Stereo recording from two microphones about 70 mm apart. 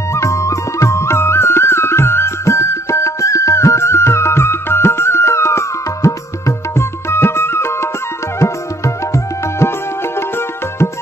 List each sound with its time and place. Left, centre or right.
0.1 s music: left